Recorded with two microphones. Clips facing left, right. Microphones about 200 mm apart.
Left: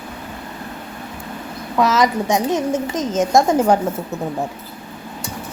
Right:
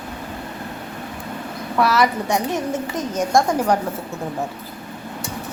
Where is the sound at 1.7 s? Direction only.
20° left (ahead or behind).